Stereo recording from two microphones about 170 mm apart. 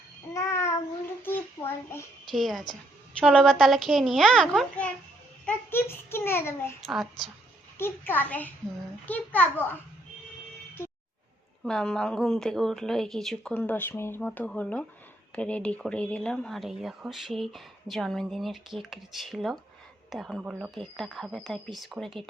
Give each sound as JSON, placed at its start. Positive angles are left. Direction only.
{"t": 0.3, "sound": "child singing", "side_deg": 15}
{"t": 1.2, "sound": "a sound", "side_deg": 15}
{"t": 2.3, "sound": "speech", "side_deg": 0}
{"t": 5.5, "sound": "a sound", "side_deg": 15}
{"t": 6.8, "sound": "a woman's voice", "side_deg": 0}
{"t": 7.8, "sound": "a child's voice", "side_deg": 15}
{"t": 11.6, "sound": "a woman's voice", "side_deg": 5}